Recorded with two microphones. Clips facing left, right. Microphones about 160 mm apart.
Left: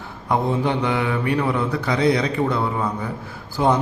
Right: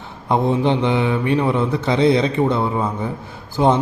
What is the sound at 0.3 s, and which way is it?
A man's voice, 20° right (ahead or behind).